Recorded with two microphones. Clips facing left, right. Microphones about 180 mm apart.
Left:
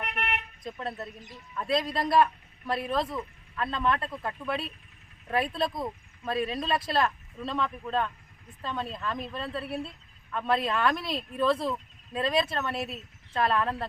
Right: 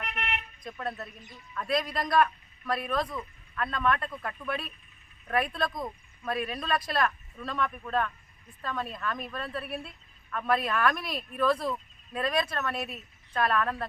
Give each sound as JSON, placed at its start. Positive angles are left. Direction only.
{"t": 0.1, "sound": "vehicle", "side_deg": 60}
{"t": 0.6, "sound": "speech", "side_deg": 25}